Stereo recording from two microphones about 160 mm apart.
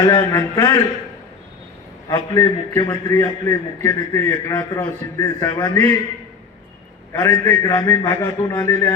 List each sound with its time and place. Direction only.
0.1 s a man's voice: 25° left (ahead or behind)
2.0 s a man's voice: 20° left (ahead or behind)
7.1 s a man's voice: 15° left (ahead or behind)